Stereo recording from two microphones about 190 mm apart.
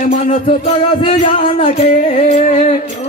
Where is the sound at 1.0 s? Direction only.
35° left (ahead or behind).